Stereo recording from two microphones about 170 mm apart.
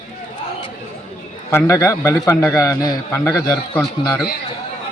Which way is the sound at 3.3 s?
10° left (ahead or behind).